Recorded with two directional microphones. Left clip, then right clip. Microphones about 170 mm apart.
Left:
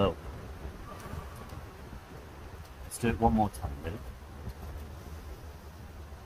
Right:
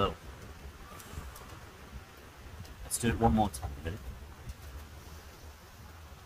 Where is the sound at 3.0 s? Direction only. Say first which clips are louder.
Left 1 dB; 5° right (ahead or behind).